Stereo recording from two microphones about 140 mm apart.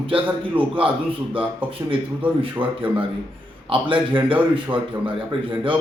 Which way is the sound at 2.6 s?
40° right (ahead or behind).